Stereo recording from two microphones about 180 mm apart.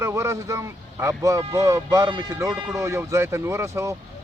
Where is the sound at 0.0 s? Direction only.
15° right (ahead or behind).